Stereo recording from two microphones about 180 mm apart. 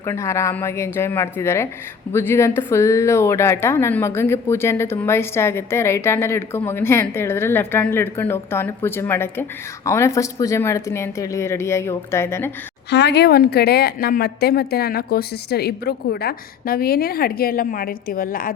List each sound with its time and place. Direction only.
0.0 s a woman's voice: 15° left (ahead or behind)
12.9 s a woman's voice: 70° left (ahead or behind); by 18.5 s 50° left (ahead or behind)